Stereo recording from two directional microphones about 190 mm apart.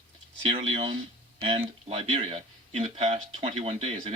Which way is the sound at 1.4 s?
30° right (ahead or behind).